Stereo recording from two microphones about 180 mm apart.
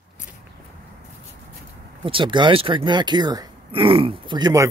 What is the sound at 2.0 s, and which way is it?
Speech, 30° right (ahead or behind).